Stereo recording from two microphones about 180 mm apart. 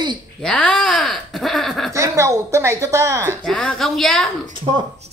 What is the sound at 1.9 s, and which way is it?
A woman's voice, 15° right (ahead or behind).